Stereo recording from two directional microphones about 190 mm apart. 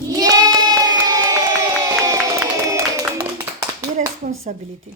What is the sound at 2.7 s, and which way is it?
Clapping, 15° right (ahead or behind).